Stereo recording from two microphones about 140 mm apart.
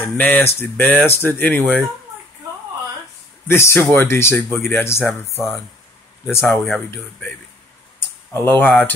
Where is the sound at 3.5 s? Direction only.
15° left (ahead or behind).